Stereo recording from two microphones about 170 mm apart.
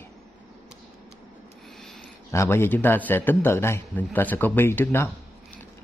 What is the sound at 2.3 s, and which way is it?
A man's voice, 15° left (ahead or behind).